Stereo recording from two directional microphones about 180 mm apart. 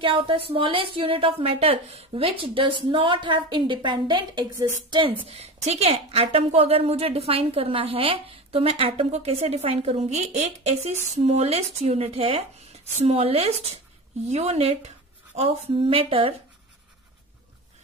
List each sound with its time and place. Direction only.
0.0 s a woman's voice: 30° right (ahead or behind)
5.2 s a woman's voice: 35° right (ahead or behind)